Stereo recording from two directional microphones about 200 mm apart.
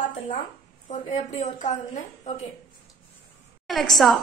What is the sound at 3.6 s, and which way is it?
Speech, centre (ahead or behind).